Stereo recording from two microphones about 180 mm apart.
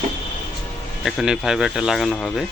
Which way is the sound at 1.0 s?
Centre (ahead or behind).